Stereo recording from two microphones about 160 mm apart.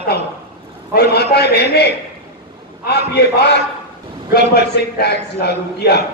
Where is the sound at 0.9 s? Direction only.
90° left.